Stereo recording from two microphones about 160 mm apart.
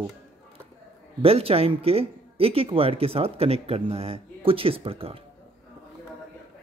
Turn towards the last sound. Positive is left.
turn(degrees=-35)  # may be behind; listen again after turning